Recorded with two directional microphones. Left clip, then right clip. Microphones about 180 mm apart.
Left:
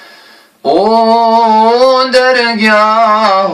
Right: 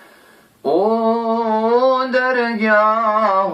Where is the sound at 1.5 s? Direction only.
45° left (ahead or behind).